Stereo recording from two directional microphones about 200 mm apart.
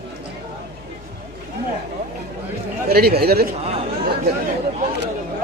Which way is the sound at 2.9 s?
50° right (ahead or behind).